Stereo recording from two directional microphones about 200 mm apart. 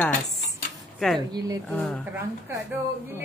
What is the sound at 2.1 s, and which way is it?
A woman's voice, 10° right (ahead or behind).